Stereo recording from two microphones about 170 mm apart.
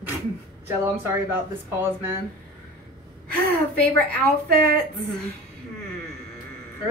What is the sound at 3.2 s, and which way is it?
Gasp, 65° right (ahead or behind).